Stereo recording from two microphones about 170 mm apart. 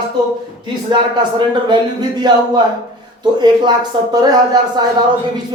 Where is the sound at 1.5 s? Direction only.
25° right (ahead or behind).